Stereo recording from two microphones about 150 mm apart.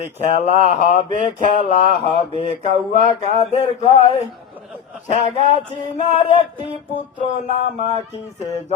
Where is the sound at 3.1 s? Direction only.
45° left (ahead or behind).